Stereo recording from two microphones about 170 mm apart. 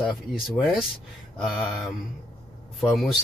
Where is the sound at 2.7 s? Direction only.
Centre (ahead or behind).